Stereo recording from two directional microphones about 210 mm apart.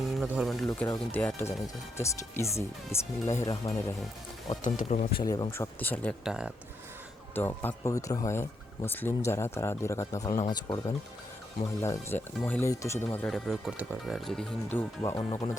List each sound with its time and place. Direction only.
0.0 s music: centre (ahead or behind)
0.7 s speech: 15° left (ahead or behind)
4.6 s speech: 35° left (ahead or behind)
5.2 s speech: 15° left (ahead or behind); by 6.5 s 5° right (ahead or behind)
7.3 s speech: 10° left (ahead or behind)